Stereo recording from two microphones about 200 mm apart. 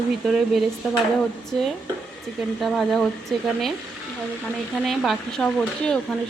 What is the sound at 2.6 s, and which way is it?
Speech, centre (ahead or behind).